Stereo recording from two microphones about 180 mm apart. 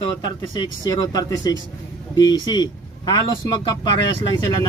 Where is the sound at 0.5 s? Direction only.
20° left (ahead or behind).